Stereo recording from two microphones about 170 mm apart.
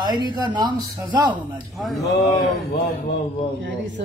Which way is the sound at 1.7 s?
Centre (ahead or behind).